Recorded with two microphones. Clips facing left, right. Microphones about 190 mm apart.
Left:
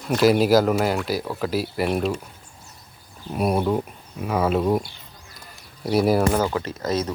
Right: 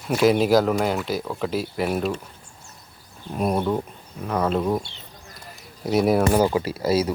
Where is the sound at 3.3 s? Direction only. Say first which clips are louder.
Left 1 dB; 10° left (ahead or behind).